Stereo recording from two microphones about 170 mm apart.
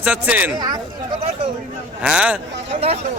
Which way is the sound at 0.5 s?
25° right (ahead or behind).